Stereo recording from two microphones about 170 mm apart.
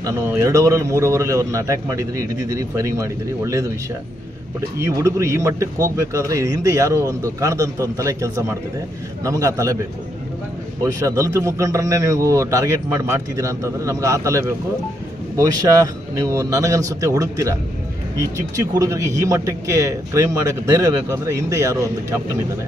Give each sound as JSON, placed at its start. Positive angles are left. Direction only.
{"t": 0.0, "sound": "a man's voice", "side_deg": -15}
{"t": 10.8, "sound": "a man's voice", "side_deg": -20}